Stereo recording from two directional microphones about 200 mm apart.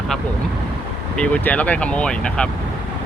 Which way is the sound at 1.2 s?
5° left (ahead or behind).